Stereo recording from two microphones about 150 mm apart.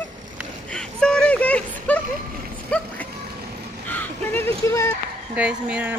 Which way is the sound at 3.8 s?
10° left (ahead or behind).